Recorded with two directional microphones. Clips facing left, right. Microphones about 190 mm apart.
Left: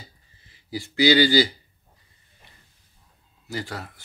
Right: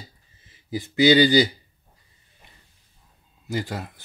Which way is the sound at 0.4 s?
20° right (ahead or behind).